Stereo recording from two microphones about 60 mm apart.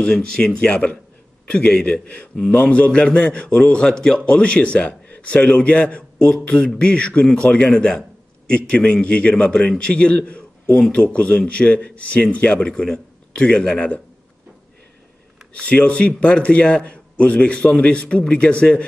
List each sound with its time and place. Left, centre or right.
0.0 s a man's voice: centre
15.7 s a man's voice: left